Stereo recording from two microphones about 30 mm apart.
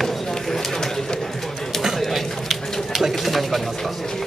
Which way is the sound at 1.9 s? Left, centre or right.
Centre.